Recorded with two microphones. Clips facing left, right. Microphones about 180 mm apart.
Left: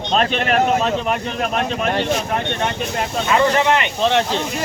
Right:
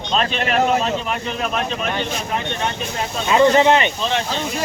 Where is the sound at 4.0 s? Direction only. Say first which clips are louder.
Left 5 dB; 70° left (ahead or behind).